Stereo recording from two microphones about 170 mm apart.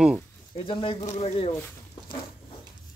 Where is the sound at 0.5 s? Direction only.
30° left (ahead or behind).